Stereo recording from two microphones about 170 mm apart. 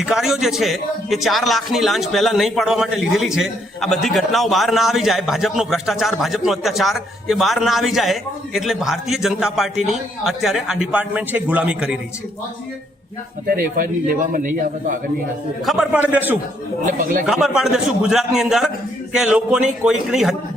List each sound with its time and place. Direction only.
0.0 s a man's voice: centre (ahead or behind)
13.7 s a man's voice: 55° right (ahead or behind)
15.6 s a man's voice: centre (ahead or behind)
16.8 s a man's voice: 55° right (ahead or behind)
17.2 s a man's voice: centre (ahead or behind)